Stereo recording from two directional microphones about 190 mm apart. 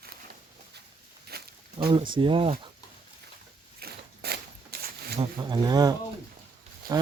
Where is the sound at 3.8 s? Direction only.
55° right (ahead or behind).